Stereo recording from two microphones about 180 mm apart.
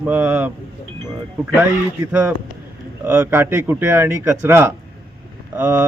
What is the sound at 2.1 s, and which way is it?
Speech, 5° right (ahead or behind).